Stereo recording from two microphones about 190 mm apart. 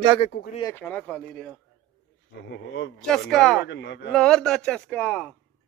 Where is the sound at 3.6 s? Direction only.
60° left (ahead or behind).